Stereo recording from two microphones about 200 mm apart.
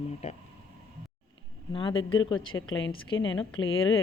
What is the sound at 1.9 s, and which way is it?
A woman's voice, 80° left.